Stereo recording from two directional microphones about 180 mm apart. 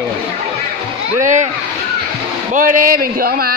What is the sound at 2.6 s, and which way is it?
Speech, 50° right (ahead or behind).